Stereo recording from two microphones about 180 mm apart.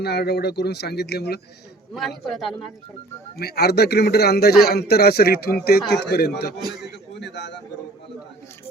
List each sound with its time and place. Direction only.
0.0 s speech: 65° left (ahead or behind)
1.9 s a man's voice: centre (ahead or behind)
3.3 s speech: 60° left (ahead or behind)
7.2 s a man's voice: 75° left (ahead or behind)